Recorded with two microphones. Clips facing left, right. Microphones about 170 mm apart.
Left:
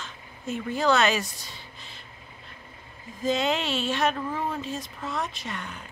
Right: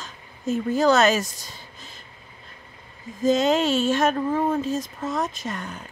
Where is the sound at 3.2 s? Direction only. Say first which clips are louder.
Right 6 dB; 40° right (ahead or behind).